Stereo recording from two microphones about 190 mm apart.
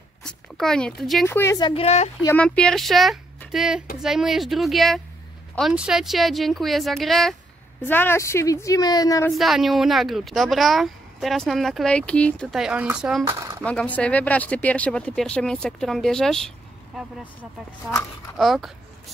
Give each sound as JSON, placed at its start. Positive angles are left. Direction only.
{"t": 0.2, "sound": "speech", "side_deg": 5}
{"t": 1.3, "sound": "a woman's voice", "side_deg": 15}
{"t": 1.7, "sound": "speech", "side_deg": 35}
{"t": 2.2, "sound": "speech", "side_deg": 5}
{"t": 7.8, "sound": "a woman's voice", "side_deg": 10}
{"t": 9.3, "sound": "speech", "side_deg": 0}
{"t": 13.7, "sound": "speech", "side_deg": 5}
{"t": 18.4, "sound": "speech", "side_deg": 0}